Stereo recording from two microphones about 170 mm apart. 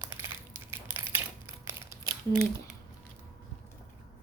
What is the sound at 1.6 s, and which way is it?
Crumpling, 15° right (ahead or behind).